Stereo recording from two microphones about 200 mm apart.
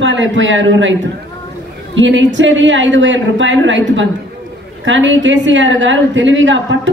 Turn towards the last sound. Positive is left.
turn(degrees=-70)  # may be behind; listen again after turning